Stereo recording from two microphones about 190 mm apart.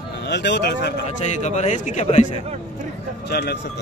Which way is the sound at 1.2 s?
40° left (ahead or behind).